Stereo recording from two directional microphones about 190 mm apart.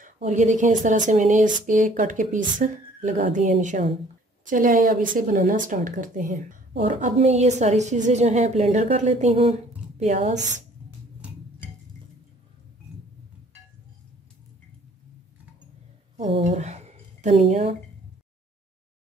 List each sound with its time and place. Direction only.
0.0 s a woman's voice: 40° right (ahead or behind)
10.3 s speech: 70° right (ahead or behind)
16.4 s speech: 35° right (ahead or behind)